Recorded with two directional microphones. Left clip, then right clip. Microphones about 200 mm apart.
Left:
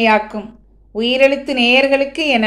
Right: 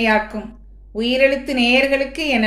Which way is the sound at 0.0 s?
10° left (ahead or behind).